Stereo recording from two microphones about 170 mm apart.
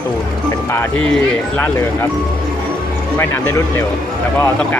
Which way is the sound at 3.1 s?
15° left (ahead or behind).